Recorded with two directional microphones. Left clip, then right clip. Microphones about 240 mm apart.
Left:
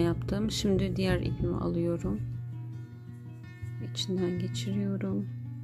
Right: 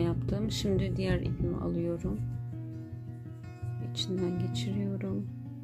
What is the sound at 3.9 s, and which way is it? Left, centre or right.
Speech, centre.